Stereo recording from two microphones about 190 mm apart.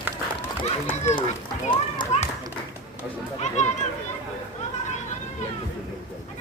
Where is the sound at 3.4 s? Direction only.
35° left (ahead or behind).